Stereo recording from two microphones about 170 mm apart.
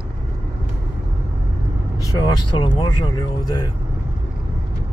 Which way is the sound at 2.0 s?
20° left (ahead or behind).